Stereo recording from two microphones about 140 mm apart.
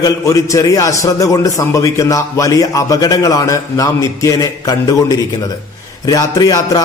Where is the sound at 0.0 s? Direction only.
25° left (ahead or behind).